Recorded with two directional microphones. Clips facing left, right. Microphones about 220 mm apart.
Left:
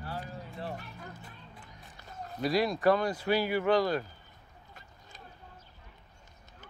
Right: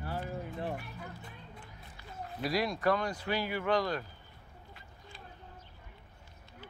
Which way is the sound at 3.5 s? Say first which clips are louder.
Left 3 dB; 30° left (ahead or behind).